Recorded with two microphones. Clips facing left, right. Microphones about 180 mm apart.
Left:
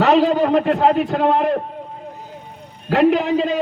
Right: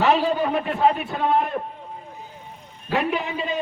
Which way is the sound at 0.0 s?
75° left (ahead or behind).